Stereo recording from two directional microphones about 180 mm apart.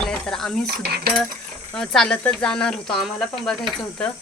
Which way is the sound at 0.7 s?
60° right (ahead or behind).